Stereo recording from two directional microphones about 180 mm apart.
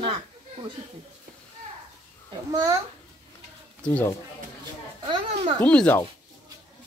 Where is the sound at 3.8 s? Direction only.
5° left (ahead or behind).